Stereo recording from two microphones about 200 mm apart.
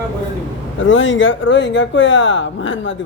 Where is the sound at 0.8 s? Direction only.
70° left (ahead or behind).